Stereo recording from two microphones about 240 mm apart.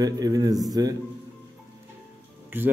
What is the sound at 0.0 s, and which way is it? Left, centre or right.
Speech, centre.